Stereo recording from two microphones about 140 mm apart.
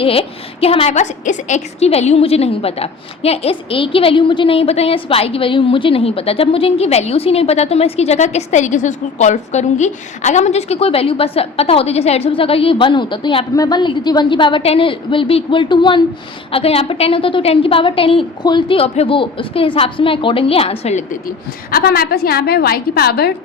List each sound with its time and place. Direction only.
0.0 s a woman's voice: 45° left (ahead or behind)
16.5 s a woman's voice: 45° left (ahead or behind)
21.1 s a woman's voice: 90° left